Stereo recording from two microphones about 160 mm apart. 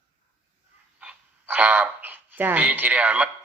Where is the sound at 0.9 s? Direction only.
10° right (ahead or behind).